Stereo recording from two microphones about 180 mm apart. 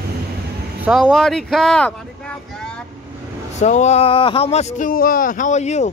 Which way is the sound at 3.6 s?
40° left (ahead or behind).